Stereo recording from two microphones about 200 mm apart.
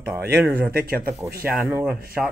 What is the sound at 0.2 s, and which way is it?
Speech, 55° right (ahead or behind).